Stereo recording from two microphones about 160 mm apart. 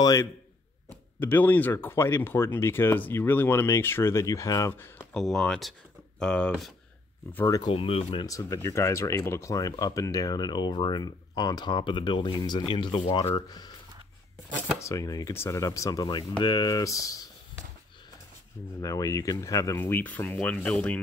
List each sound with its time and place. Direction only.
0.0 s speech: 20° left (ahead or behind)
5.1 s speech: 5° left (ahead or behind)
7.4 s speech: 25° left (ahead or behind)
7.7 s speech: 35° left (ahead or behind)
8.3 s speech: 20° left (ahead or behind)
14.8 s speech: 20° left (ahead or behind)
18.8 s speech: 20° left (ahead or behind)